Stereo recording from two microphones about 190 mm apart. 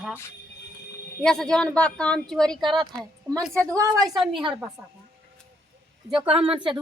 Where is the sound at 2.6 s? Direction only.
25° right (ahead or behind).